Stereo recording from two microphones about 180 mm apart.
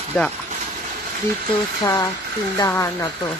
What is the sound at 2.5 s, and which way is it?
Speech, 15° left (ahead or behind).